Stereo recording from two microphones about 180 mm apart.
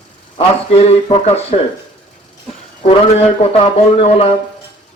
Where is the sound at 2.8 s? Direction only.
30° left (ahead or behind).